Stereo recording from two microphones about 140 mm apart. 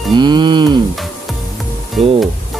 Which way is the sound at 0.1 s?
30° right (ahead or behind).